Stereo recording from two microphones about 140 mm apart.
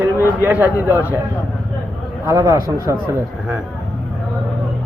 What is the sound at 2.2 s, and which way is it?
Speech, 20° right (ahead or behind).